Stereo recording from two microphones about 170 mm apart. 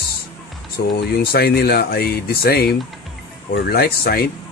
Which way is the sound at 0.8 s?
65° left (ahead or behind).